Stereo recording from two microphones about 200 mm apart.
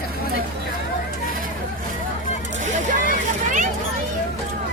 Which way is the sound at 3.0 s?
40° right (ahead or behind).